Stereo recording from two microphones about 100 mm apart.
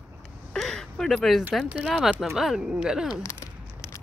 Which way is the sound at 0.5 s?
5° left (ahead or behind).